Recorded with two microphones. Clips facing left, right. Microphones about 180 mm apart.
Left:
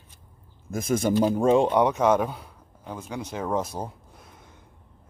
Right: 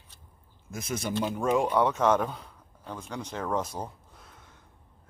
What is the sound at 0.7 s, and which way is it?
Speech, 50° left (ahead or behind).